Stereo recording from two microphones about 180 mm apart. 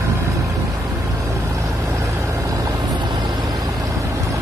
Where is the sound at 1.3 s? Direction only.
15° right (ahead or behind).